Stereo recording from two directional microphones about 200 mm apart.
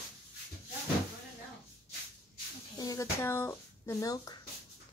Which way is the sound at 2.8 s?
15° left (ahead or behind).